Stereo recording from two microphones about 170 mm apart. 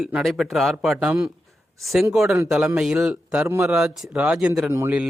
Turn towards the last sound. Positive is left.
turn(degrees=-15)  # may be behind; listen again after turning